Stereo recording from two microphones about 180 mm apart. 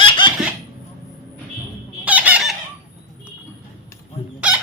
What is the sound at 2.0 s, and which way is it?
Fowl, 10° right (ahead or behind).